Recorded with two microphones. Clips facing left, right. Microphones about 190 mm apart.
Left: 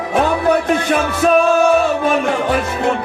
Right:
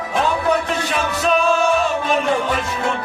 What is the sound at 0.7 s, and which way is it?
Music, 50° left (ahead or behind).